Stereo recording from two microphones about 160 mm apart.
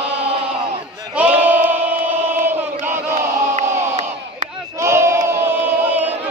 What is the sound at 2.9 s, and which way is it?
Crowd, 50° right (ahead or behind).